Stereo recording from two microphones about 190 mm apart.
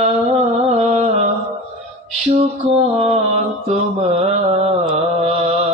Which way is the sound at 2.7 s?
30° right (ahead or behind).